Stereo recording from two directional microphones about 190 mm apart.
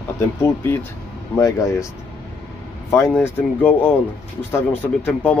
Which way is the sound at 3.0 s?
10° left (ahead or behind).